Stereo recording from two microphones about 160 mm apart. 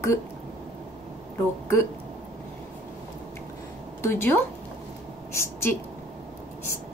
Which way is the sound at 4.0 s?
15° left (ahead or behind).